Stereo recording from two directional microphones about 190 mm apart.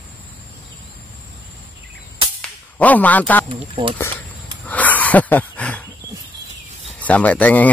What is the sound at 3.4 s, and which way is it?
Speech, 30° right (ahead or behind).